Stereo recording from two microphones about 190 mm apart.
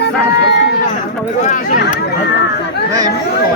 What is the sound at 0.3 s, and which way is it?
Run, 65° left (ahead or behind).